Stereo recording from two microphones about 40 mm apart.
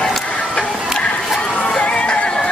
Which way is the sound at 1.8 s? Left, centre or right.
Left.